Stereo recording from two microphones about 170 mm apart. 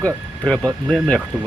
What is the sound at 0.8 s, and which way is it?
Speech, 5° left (ahead or behind).